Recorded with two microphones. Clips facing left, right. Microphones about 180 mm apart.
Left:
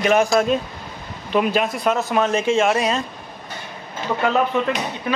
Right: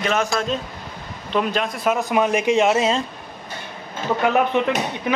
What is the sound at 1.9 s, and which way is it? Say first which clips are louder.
Speech: right 3 dB; 15° right (ahead or behind).